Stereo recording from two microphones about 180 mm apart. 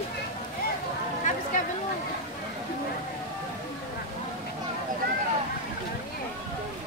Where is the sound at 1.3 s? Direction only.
45° left (ahead or behind).